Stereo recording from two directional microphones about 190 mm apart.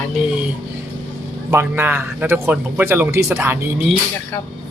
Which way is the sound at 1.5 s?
10° right (ahead or behind).